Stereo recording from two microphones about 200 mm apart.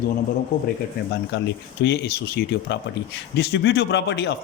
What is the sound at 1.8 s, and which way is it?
A man's voice, 55° left (ahead or behind).